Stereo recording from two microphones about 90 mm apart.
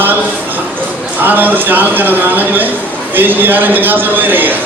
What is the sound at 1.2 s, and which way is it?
A man's voice, 20° right (ahead or behind).